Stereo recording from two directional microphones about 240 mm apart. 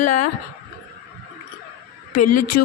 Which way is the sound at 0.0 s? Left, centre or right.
Left.